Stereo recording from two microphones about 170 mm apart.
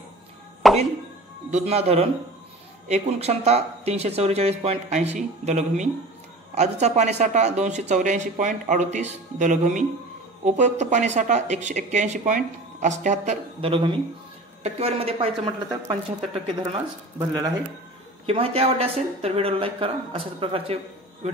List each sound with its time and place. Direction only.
0.6 s music: centre (ahead or behind)
1.5 s speech: 35° right (ahead or behind)
18.2 s a man's voice: 35° right (ahead or behind)